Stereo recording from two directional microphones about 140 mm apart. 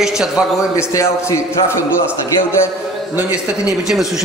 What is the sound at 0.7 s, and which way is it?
Speech, 20° left (ahead or behind).